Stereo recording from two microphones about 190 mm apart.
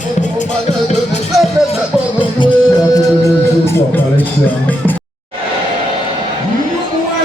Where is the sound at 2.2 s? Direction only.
25° left (ahead or behind).